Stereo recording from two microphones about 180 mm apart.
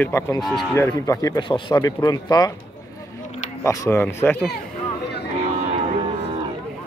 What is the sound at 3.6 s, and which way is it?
Speech, 15° left (ahead or behind).